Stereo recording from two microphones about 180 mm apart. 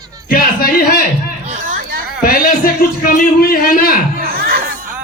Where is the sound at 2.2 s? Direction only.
50° left (ahead or behind).